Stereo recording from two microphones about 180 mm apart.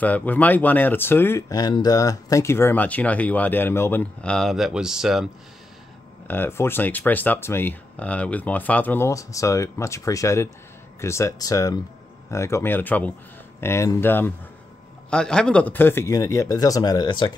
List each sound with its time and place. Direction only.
0.0 s speech: 10° left (ahead or behind)
6.2 s a man's voice: 10° left (ahead or behind)